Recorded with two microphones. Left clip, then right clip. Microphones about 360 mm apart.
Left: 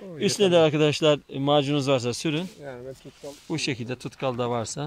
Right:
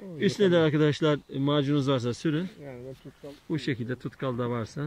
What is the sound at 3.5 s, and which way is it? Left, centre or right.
Speech, centre.